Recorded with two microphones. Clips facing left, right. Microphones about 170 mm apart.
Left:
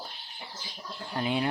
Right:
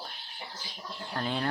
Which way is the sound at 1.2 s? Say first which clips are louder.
Left 3 dB; 10° left (ahead or behind).